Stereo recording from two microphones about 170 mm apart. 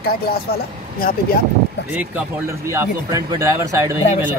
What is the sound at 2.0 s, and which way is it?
Speech, 10° right (ahead or behind).